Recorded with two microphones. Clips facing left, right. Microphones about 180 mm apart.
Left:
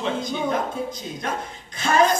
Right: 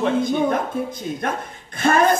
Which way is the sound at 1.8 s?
55° right (ahead or behind).